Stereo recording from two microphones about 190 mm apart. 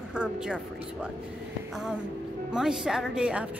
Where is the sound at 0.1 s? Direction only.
5° right (ahead or behind).